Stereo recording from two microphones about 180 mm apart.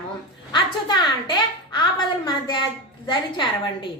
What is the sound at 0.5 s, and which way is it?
A woman's voice, 25° left (ahead or behind).